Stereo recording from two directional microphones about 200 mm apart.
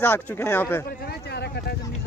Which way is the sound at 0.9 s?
50° left (ahead or behind).